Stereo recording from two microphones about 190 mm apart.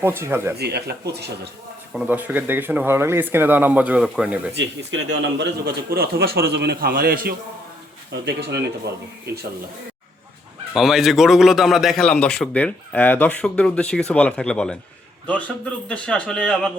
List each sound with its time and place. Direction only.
0.0 s speech: 10° right (ahead or behind)
0.5 s a man's voice: 60° right (ahead or behind)
1.9 s speech: 5° right (ahead or behind)
4.9 s a man's voice: 80° right
5.4 s a man's voice: 55° right (ahead or behind)
10.8 s a man's voice: centre (ahead or behind)